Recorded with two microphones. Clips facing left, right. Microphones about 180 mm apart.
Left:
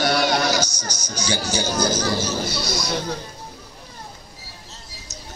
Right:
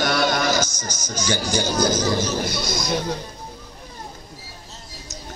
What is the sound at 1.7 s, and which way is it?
Speech, 20° right (ahead or behind).